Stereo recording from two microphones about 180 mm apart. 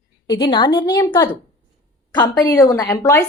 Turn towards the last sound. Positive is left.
turn(degrees=20)  # may be behind; listen again after turning